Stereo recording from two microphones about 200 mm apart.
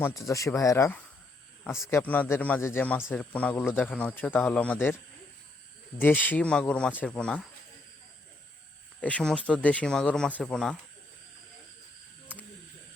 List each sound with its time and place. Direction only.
0.3 s speech: 15° left (ahead or behind)
6.0 s speech: 10° left (ahead or behind)
9.0 s speech: 5° left (ahead or behind)